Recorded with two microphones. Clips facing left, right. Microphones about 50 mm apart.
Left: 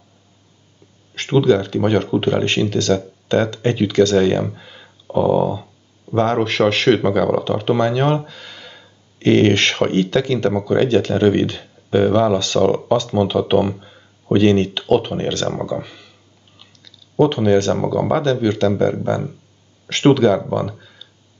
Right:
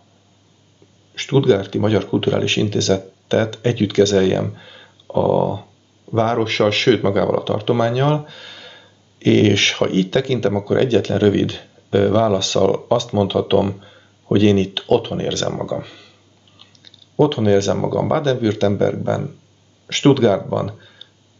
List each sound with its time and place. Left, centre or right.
1.1 s speech: centre
17.2 s speech: centre